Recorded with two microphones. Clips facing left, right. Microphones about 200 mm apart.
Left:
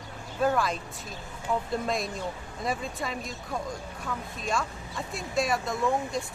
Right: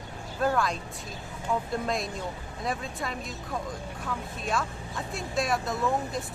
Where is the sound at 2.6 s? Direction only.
Centre (ahead or behind).